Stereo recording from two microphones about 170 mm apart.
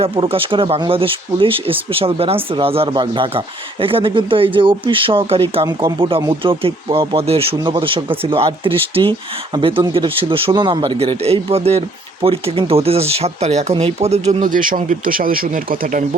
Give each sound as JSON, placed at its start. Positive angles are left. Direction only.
{"t": 0.0, "sound": "speech", "side_deg": -35}